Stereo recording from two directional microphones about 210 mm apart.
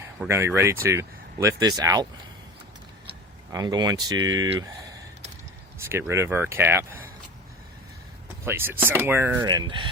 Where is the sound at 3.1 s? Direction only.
20° right (ahead or behind).